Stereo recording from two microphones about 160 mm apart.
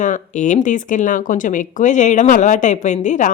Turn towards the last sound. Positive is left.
turn(degrees=50)  # may be behind; listen again after turning